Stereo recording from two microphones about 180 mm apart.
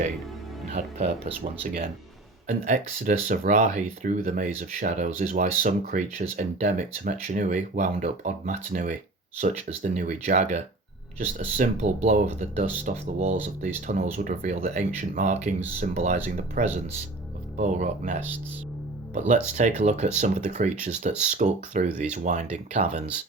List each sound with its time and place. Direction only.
0.7 s speech: 35° right (ahead or behind)
2.5 s speech: 45° right (ahead or behind)